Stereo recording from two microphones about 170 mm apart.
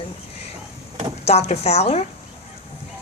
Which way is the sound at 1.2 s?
40° left (ahead or behind).